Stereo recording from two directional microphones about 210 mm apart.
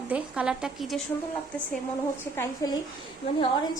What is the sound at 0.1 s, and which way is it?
Speech, 5° right (ahead or behind).